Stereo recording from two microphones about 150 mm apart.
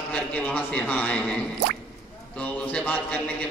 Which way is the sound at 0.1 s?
10° left (ahead or behind).